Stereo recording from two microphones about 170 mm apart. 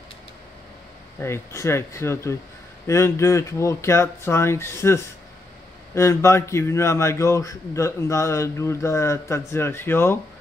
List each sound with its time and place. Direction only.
1.2 s a man's voice: 15° left (ahead or behind)